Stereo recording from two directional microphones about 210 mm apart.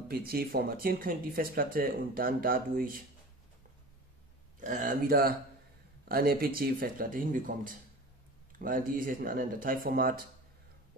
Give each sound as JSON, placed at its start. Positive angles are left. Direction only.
{"t": 0.1, "sound": "speech", "side_deg": -45}
{"t": 4.6, "sound": "speech", "side_deg": -40}